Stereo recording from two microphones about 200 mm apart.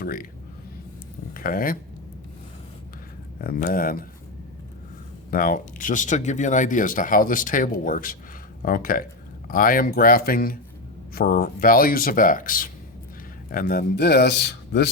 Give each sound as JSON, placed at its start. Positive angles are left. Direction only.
{"t": 0.0, "sound": "speech", "side_deg": 45}
{"t": 1.3, "sound": "speech", "side_deg": 45}
{"t": 3.4, "sound": "speech", "side_deg": 45}
{"t": 5.3, "sound": "a man's voice", "side_deg": 45}